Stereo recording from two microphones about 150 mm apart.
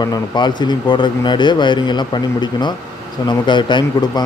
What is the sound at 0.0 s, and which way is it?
A man's voice, 25° left (ahead or behind).